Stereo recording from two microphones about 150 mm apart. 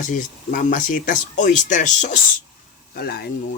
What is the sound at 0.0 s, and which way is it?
Speech, 60° left (ahead or behind).